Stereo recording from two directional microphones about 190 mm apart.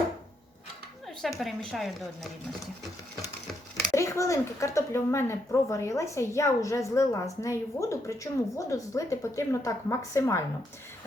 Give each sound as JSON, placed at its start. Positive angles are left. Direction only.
{"t": 1.0, "sound": "speech", "side_deg": 0}
{"t": 3.9, "sound": "speech", "side_deg": 15}